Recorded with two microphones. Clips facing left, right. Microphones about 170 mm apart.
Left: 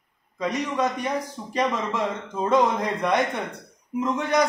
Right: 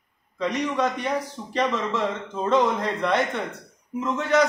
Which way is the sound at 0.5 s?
10° left (ahead or behind).